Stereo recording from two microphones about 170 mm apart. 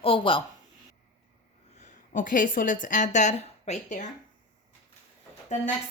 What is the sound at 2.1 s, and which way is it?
A woman's voice, 50° left (ahead or behind).